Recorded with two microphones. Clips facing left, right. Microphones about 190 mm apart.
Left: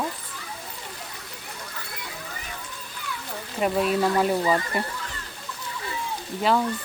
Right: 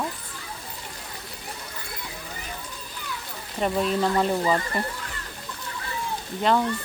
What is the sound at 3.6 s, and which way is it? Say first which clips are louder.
Speech: left 1 dB; 5° left (ahead or behind).